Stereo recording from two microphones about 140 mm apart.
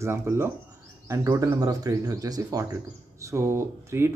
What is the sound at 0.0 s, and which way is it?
Speech, 20° right (ahead or behind).